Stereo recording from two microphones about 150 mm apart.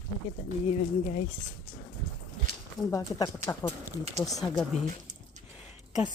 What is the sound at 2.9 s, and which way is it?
Speech, 25° left (ahead or behind).